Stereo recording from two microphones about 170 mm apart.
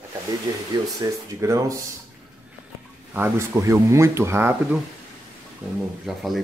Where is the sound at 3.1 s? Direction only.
15° right (ahead or behind).